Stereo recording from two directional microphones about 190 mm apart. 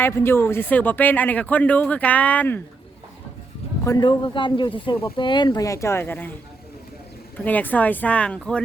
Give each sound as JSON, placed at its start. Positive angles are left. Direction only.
{"t": 0.0, "sound": "speech", "side_deg": 10}
{"t": 3.8, "sound": "speech", "side_deg": 20}
{"t": 7.3, "sound": "speech", "side_deg": 10}